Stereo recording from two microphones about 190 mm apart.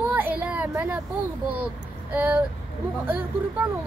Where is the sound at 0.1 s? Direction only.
10° right (ahead or behind).